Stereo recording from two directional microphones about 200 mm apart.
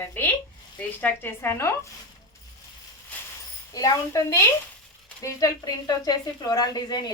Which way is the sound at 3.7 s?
15° left (ahead or behind).